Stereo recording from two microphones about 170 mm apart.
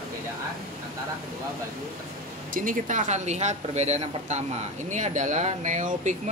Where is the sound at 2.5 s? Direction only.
50° right (ahead or behind).